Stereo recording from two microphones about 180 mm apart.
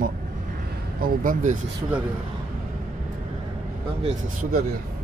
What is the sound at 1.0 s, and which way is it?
Speech, 50° right (ahead or behind).